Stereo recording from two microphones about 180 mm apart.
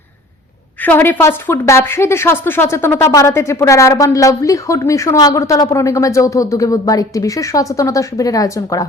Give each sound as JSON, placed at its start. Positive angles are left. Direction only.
{"t": 0.8, "sound": "speech", "side_deg": 10}